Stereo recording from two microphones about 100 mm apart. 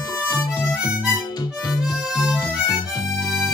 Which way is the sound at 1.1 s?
40° left (ahead or behind).